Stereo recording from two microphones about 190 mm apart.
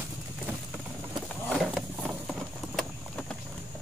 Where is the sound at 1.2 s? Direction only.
Centre (ahead or behind).